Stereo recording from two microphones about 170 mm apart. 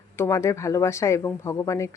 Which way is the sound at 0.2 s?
15° left (ahead or behind).